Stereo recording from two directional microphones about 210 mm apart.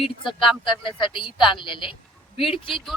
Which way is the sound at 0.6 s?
25° left (ahead or behind).